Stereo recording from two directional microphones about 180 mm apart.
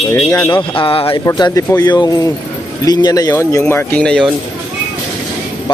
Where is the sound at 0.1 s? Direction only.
10° left (ahead or behind).